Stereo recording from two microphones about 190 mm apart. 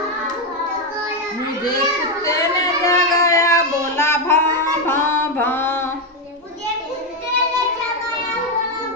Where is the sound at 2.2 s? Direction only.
15° left (ahead or behind).